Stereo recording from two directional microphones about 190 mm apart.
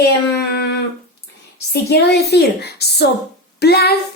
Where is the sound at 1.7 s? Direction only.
60° left (ahead or behind).